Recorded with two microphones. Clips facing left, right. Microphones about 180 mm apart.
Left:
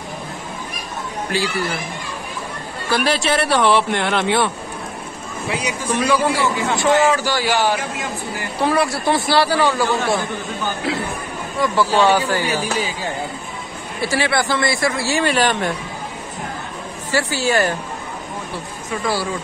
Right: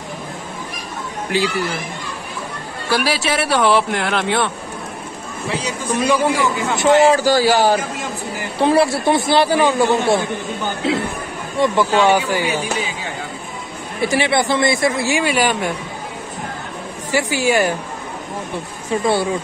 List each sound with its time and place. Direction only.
1.3 s a man's voice: 20° right (ahead or behind)
2.9 s speech: 5° right (ahead or behind)
5.5 s a man's voice: 10° left (ahead or behind)
6.0 s speech: 15° right (ahead or behind)
7.1 s speech: 40° right (ahead or behind)
8.5 s a man's voice: 25° right (ahead or behind)
14.0 s a man's voice: 20° right (ahead or behind)
17.1 s speech: 15° right (ahead or behind)
18.9 s a man's voice: 25° right (ahead or behind)